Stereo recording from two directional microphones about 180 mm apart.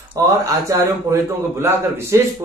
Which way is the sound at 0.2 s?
20° right (ahead or behind).